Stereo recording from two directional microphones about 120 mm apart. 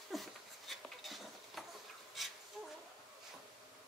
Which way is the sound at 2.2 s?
Centre (ahead or behind).